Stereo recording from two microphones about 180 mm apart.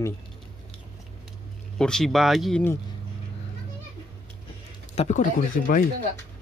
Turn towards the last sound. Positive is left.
turn(degrees=45)  # may be behind; listen again after turning